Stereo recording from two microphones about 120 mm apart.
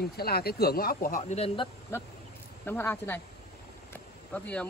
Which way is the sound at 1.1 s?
70° left (ahead or behind).